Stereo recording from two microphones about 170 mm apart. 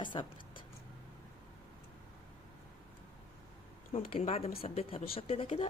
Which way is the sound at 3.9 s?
35° left (ahead or behind).